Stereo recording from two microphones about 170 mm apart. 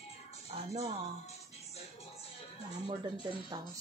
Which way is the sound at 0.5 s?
35° right (ahead or behind).